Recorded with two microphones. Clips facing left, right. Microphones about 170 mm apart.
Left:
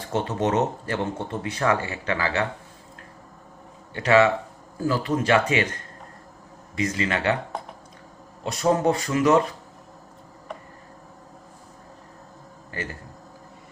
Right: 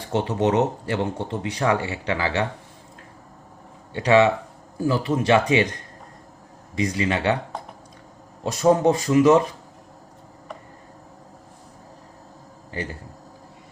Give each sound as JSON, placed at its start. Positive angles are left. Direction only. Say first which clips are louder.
{"t": 0.0, "sound": "speech", "louder": "right 3 dB", "side_deg": -15}
{"t": 3.9, "sound": "speech", "louder": "right 1 dB", "side_deg": -15}
{"t": 6.7, "sound": "speech", "louder": "right 2 dB", "side_deg": -15}
{"t": 8.5, "sound": "speech", "louder": "right 3 dB", "side_deg": -20}